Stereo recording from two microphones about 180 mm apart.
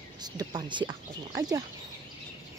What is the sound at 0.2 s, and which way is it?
Speech, 20° right (ahead or behind).